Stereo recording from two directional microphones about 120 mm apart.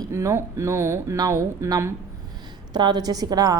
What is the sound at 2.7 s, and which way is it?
Speech, 35° right (ahead or behind).